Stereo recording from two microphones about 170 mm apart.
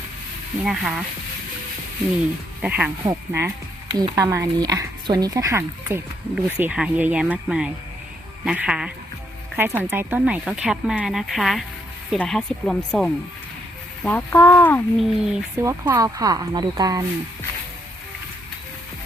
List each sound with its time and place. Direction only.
0.6 s speech: 5° right (ahead or behind)
2.6 s speech: 10° right (ahead or behind)
6.3 s speech: 5° right (ahead or behind); by 14.8 s 15° left (ahead or behind)
14.9 s speech: centre (ahead or behind)
15.6 s speech: 20° right (ahead or behind)